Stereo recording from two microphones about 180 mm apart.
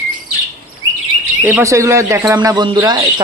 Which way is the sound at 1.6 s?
15° right (ahead or behind).